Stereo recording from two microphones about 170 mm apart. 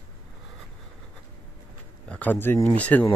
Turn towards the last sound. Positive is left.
turn(degrees=10)  # may be behind; listen again after turning